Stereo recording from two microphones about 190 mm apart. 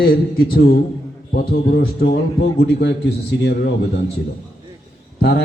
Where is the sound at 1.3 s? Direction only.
55° left (ahead or behind).